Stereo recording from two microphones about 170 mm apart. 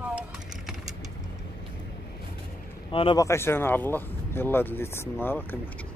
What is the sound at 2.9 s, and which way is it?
Speech, 30° left (ahead or behind).